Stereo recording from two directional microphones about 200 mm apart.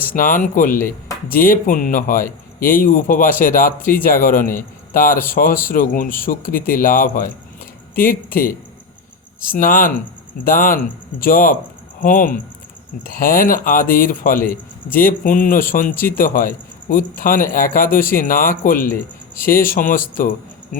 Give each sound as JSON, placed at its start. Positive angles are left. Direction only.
{"t": 0.1, "sound": "speech", "side_deg": 45}
{"t": 0.8, "sound": "speech", "side_deg": 10}
{"t": 1.4, "sound": "speech", "side_deg": 45}